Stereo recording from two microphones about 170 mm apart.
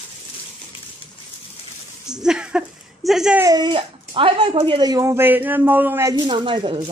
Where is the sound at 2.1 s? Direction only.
5° right (ahead or behind).